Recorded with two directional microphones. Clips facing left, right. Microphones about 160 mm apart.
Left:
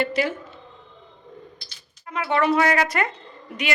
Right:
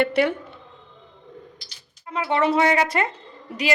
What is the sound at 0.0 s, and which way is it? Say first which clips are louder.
Speech: right 4 dB; 60° right (ahead or behind).